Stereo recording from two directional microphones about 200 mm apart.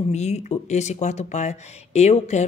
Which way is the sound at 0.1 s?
35° left (ahead or behind).